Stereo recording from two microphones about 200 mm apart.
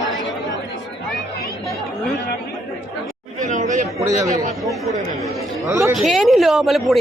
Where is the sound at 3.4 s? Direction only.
40° right (ahead or behind).